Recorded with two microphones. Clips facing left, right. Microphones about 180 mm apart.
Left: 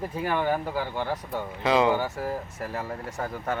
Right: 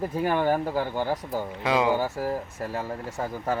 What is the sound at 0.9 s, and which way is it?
Speech, 10° right (ahead or behind).